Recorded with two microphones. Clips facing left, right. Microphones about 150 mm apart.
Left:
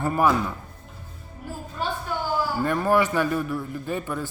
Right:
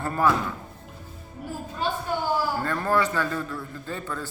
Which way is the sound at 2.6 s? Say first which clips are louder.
Left 6 dB; 15° left (ahead or behind).